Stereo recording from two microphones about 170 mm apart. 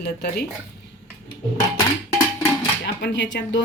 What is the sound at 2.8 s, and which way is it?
Speech, 90° left.